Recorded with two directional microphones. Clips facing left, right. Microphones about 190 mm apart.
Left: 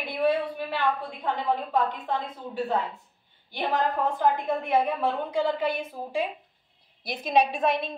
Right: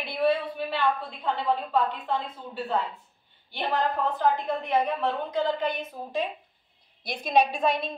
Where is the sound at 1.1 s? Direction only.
10° left (ahead or behind).